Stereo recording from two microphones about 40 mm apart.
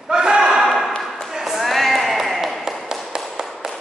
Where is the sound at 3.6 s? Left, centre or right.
Centre.